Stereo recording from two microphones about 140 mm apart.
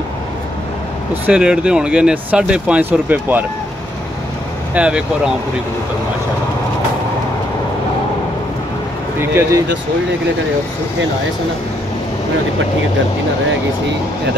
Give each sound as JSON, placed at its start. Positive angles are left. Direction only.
{"t": 1.2, "sound": "speech", "side_deg": -10}
{"t": 4.7, "sound": "speech", "side_deg": -10}
{"t": 9.2, "sound": "speech", "side_deg": -15}